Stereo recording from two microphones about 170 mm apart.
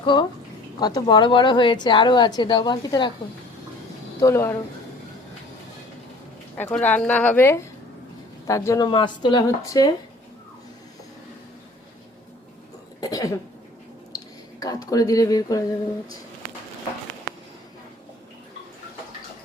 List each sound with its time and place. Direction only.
0.0 s a woman's voice: 30° left (ahead or behind)
4.2 s a woman's voice: 15° left (ahead or behind)
6.6 s a woman's voice: 10° left (ahead or behind)
8.9 s a woman's voice: 30° left (ahead or behind)
13.0 s a sound: 20° left (ahead or behind)
14.6 s speech: 20° left (ahead or behind)